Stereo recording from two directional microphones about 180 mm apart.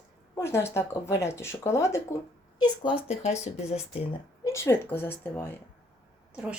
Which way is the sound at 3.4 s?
40° left (ahead or behind).